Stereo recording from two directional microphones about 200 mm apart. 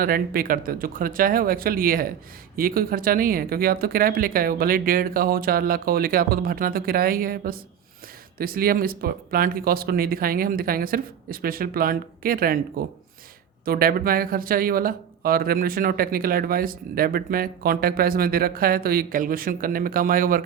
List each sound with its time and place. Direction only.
0.0 s speech: 45° right (ahead or behind)
13.7 s speech: 45° right (ahead or behind)